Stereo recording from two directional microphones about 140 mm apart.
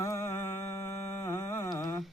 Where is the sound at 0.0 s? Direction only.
20° left (ahead or behind).